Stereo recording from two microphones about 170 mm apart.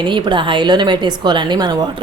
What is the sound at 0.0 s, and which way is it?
Speech, 30° right (ahead or behind).